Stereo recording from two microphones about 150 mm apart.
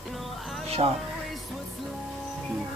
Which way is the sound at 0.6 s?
45° right (ahead or behind).